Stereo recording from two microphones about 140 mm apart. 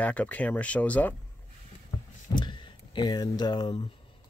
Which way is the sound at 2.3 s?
30° left (ahead or behind).